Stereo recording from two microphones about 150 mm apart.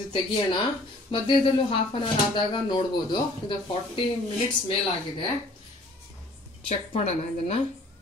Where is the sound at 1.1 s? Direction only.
35° left (ahead or behind).